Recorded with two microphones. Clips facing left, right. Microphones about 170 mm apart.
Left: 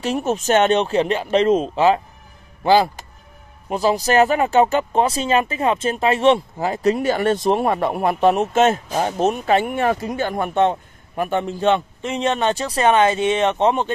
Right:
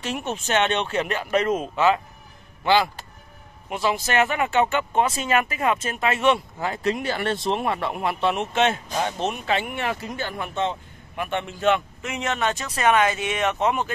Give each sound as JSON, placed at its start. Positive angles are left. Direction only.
{"t": 0.0, "sound": "speech", "side_deg": 40}
{"t": 10.3, "sound": "speech", "side_deg": 55}
{"t": 11.1, "sound": "speech", "side_deg": 40}